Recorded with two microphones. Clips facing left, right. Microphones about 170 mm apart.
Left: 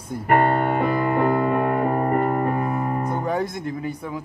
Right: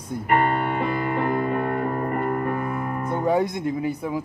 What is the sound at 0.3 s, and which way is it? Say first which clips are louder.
Music: left 3 dB; 60° left (ahead or behind).